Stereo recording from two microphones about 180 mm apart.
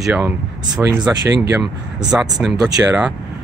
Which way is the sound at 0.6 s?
20° right (ahead or behind).